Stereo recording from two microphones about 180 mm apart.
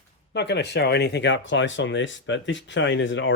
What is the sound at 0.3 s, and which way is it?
Speech, 70° left (ahead or behind).